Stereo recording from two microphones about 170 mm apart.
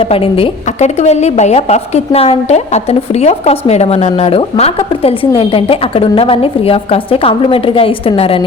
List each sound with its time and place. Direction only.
0.0 s a woman's voice: 35° left (ahead or behind)